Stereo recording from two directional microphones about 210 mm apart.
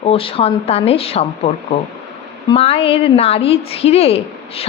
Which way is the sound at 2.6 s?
30° left (ahead or behind).